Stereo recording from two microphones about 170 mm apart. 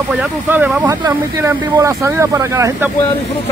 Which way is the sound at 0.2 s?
10° right (ahead or behind).